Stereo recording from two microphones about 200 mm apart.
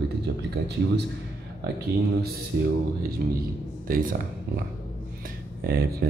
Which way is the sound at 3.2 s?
55° right (ahead or behind).